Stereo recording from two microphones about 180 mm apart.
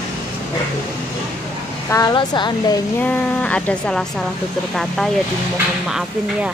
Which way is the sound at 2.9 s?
5° left (ahead or behind).